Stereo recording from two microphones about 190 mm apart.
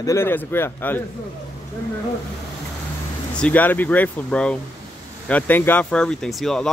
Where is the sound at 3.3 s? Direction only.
5° left (ahead or behind).